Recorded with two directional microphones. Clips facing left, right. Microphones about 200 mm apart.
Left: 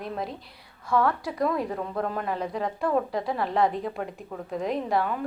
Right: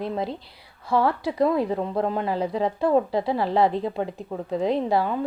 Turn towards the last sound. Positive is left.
turn(degrees=-30)  # may be behind; listen again after turning